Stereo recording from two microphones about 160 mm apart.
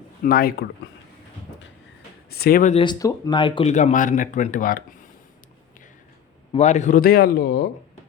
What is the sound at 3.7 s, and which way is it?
Speech, 50° left (ahead or behind).